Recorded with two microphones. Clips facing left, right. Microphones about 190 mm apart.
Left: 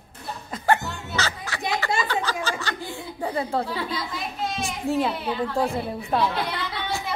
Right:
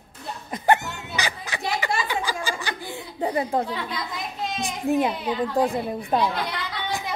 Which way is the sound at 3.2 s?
15° right (ahead or behind).